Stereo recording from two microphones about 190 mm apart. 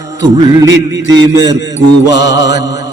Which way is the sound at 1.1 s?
20° right (ahead or behind).